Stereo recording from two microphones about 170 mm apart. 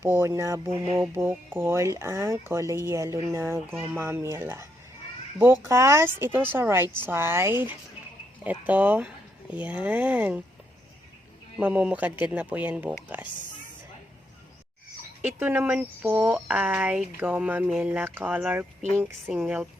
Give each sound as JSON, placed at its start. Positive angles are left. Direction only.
{"t": 0.0, "sound": "speech", "side_deg": -15}
{"t": 11.5, "sound": "speech", "side_deg": -5}
{"t": 15.2, "sound": "speech", "side_deg": -10}